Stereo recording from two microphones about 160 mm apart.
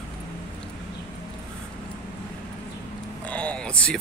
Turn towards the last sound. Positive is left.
turn(degrees=5)  # may be behind; listen again after turning